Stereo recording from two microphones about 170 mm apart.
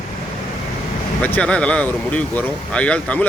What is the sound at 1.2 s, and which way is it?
Speech, 10° left (ahead or behind).